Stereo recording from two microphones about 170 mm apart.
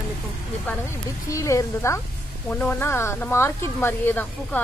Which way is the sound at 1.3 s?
20° left (ahead or behind).